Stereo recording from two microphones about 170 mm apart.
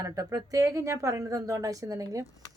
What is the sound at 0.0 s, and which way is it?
Speech, 20° right (ahead or behind).